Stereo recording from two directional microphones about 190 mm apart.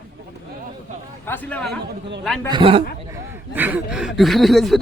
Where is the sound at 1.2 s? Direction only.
10° left (ahead or behind).